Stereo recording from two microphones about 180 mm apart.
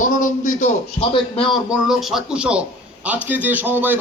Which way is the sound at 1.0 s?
30° left (ahead or behind).